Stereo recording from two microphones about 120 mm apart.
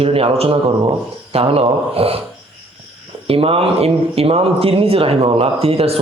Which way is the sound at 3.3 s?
55° right (ahead or behind).